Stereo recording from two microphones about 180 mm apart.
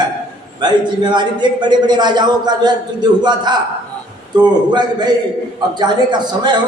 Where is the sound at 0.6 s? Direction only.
25° right (ahead or behind).